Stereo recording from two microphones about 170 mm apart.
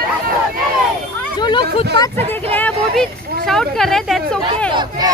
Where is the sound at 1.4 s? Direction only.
25° left (ahead or behind).